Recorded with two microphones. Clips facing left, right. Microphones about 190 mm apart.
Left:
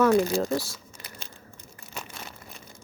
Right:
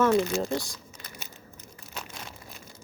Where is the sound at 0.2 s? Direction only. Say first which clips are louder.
Left 2 dB; 35° left (ahead or behind).